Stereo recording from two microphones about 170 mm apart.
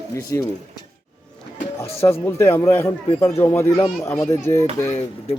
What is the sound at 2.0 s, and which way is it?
A man's voice, 15° left (ahead or behind).